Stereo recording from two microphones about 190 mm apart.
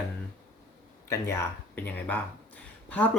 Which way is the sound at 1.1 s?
15° left (ahead or behind).